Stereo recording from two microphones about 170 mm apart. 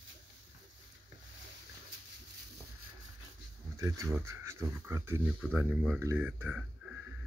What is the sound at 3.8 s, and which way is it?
Speech, 15° right (ahead or behind).